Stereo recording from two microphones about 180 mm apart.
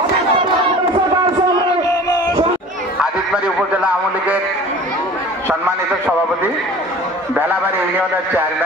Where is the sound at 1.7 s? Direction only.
20° left (ahead or behind).